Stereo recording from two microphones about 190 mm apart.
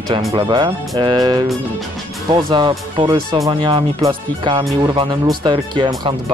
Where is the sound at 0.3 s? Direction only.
20° right (ahead or behind).